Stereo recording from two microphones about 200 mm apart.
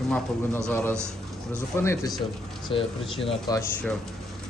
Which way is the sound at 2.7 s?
25° left (ahead or behind).